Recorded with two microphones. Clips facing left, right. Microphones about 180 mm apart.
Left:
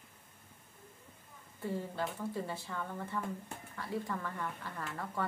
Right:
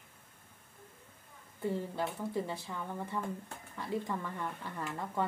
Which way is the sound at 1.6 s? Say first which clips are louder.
Right 2 dB; 15° right (ahead or behind).